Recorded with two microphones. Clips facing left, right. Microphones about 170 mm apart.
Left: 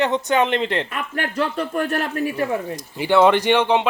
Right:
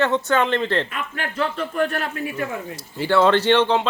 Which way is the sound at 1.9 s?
40° left (ahead or behind).